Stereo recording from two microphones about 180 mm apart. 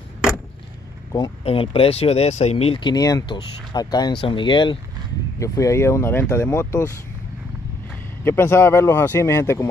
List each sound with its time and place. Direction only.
1.1 s speech: 30° left (ahead or behind)
7.9 s speech: 10° left (ahead or behind)